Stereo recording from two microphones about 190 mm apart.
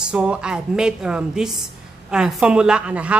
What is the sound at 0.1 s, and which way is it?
A woman's voice, 5° right (ahead or behind).